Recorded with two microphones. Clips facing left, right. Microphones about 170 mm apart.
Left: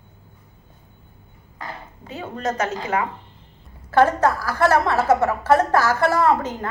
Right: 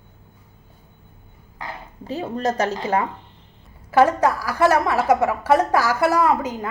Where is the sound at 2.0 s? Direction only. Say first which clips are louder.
Right 3 dB; 35° right (ahead or behind).